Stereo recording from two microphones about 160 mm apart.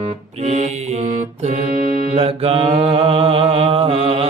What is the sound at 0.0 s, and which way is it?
Music, 45° right (ahead or behind).